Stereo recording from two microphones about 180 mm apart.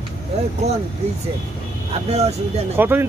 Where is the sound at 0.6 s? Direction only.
35° right (ahead or behind).